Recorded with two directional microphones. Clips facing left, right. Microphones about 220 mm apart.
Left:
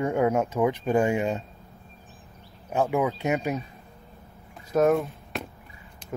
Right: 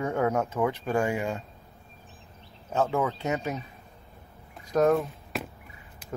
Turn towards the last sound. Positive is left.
turn(degrees=0)  # may be behind; listen again after turning